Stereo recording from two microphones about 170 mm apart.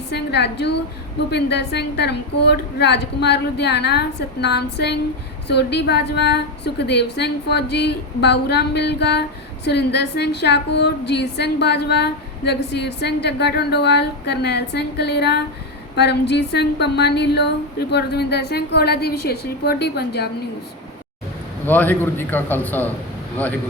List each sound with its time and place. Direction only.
0.1 s a woman's voice: 80° left
21.7 s a man's voice: 10° left (ahead or behind)